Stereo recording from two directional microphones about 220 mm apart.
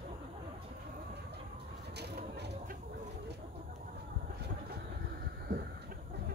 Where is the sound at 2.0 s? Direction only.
50° right (ahead or behind).